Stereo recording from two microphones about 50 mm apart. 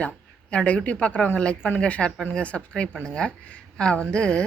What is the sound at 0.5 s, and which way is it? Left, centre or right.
A woman's voice, left.